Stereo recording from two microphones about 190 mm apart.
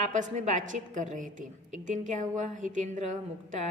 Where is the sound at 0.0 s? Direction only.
40° right (ahead or behind).